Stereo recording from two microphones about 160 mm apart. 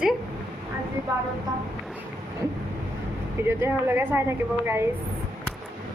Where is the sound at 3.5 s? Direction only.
15° right (ahead or behind).